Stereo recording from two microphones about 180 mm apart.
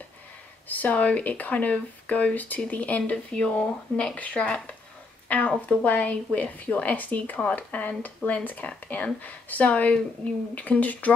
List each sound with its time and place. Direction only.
0.7 s a woman's voice: 10° left (ahead or behind)